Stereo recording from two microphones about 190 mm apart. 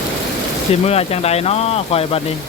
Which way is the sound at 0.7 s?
35° left (ahead or behind).